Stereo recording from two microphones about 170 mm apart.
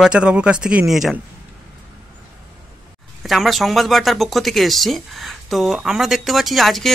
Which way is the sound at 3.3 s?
Centre (ahead or behind).